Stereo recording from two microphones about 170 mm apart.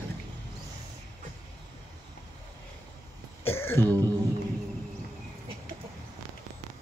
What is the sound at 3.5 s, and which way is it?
Throat clearing, 15° left (ahead or behind).